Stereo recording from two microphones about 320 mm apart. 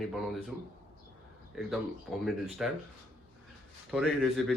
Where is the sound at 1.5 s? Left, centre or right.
Centre.